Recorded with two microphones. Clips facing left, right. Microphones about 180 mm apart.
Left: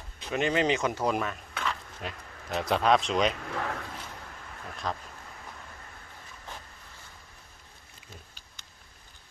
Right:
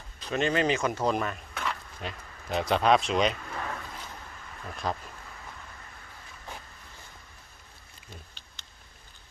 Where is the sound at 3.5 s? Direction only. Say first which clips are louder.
Left 3 dB; 70° left (ahead or behind).